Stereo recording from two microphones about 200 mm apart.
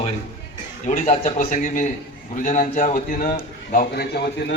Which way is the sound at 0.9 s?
35° left (ahead or behind).